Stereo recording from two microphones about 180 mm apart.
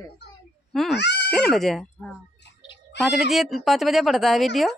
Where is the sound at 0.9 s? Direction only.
70° left (ahead or behind).